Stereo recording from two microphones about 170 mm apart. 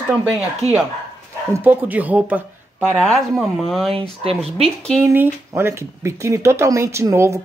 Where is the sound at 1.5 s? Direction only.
10° right (ahead or behind).